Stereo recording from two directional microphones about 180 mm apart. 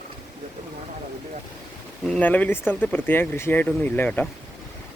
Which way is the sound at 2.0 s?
5° left (ahead or behind).